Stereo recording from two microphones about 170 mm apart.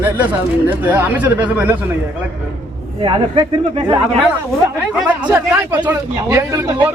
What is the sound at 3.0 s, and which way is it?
Speech, 30° right (ahead or behind).